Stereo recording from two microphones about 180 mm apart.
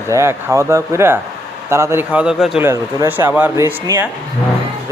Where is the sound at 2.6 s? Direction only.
15° right (ahead or behind).